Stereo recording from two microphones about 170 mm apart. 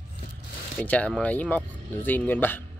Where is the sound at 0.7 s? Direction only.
10° left (ahead or behind).